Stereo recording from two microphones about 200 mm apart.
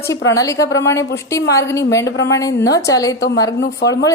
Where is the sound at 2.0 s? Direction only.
60° left (ahead or behind).